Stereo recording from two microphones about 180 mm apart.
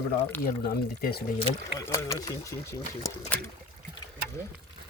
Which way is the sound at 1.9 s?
15° left (ahead or behind).